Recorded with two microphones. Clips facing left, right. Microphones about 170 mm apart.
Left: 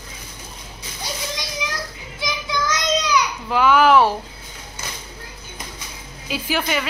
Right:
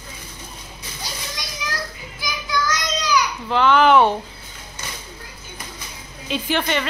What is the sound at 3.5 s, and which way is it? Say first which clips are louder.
Speech: even; 5° left (ahead or behind).